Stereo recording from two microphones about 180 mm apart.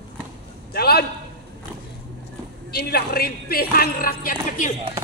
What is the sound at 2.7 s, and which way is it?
Speech, 60° left (ahead or behind).